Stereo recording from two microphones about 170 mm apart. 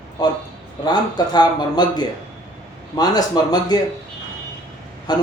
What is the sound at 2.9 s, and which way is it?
Speech, 20° left (ahead or behind).